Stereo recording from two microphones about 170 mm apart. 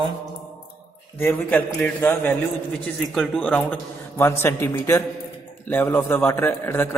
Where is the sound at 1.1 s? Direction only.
15° left (ahead or behind).